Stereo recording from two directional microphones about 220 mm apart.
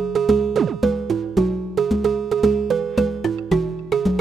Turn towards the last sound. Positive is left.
turn(degrees=0)  # may be behind; listen again after turning